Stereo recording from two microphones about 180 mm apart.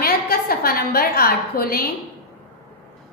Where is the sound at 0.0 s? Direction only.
55° left (ahead or behind).